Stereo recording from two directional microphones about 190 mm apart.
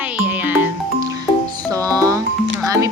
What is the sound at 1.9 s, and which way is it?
Music, 20° right (ahead or behind).